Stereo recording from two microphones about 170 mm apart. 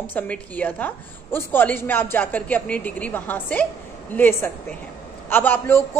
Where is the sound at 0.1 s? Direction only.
10° left (ahead or behind).